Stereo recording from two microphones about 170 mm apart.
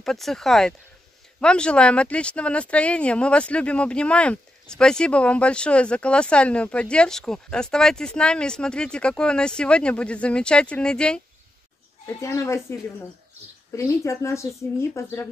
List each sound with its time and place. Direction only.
0.0 s speech: centre (ahead or behind)
12.2 s speech: 20° left (ahead or behind)